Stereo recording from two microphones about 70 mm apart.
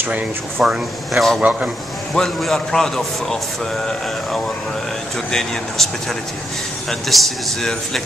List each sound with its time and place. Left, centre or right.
0.6 s speech: centre
1.4 s a man's voice: right
2.1 s a man's voice: centre
5.3 s a man's voice: centre